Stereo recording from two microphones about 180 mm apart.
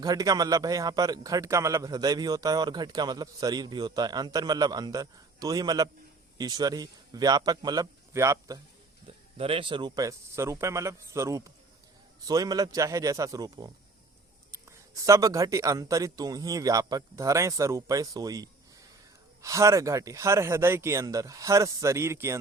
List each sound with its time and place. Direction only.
0.0 s a man's voice: 20° right (ahead or behind)
9.0 s a man's voice: 30° right (ahead or behind); by 22.4 s 15° right (ahead or behind)